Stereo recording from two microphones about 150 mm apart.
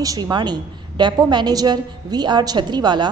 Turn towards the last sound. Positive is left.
turn(degrees=-30)  # may be behind; listen again after turning